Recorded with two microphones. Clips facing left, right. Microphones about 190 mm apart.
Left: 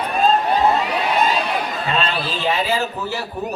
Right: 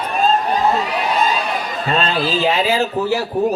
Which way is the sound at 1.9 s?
40° right (ahead or behind).